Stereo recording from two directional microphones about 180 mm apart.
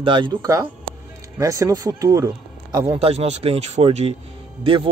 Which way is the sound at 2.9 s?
35° right (ahead or behind).